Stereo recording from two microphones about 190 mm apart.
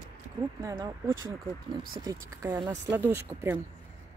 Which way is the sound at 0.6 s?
20° right (ahead or behind).